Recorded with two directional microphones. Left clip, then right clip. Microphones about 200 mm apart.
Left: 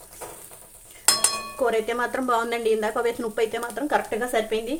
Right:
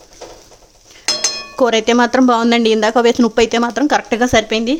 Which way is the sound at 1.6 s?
55° right (ahead or behind).